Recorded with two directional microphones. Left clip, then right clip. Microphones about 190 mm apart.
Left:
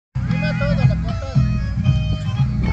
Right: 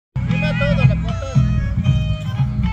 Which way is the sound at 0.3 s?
35° right (ahead or behind).